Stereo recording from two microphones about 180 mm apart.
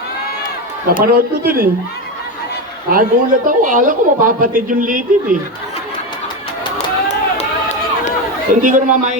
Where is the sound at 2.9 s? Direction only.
50° right (ahead or behind).